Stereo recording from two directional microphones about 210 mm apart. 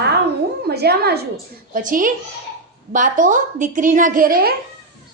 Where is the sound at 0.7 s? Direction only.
50° right (ahead or behind).